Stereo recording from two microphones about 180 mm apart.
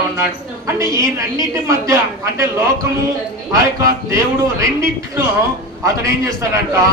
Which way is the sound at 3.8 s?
15° right (ahead or behind).